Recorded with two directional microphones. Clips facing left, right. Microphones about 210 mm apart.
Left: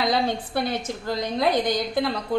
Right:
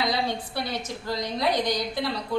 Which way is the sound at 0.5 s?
50° left (ahead or behind).